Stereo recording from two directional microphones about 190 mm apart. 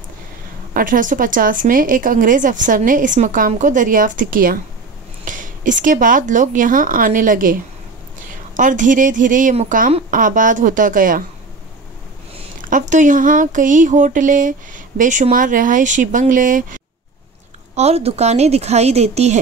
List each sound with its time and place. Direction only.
0.7 s speech: 45° right (ahead or behind)
8.5 s speech: 45° right (ahead or behind)
12.6 s speech: 40° right (ahead or behind)
17.7 s a woman's voice: 35° right (ahead or behind)